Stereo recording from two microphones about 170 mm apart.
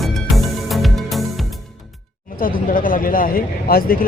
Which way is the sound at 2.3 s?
55° left (ahead or behind).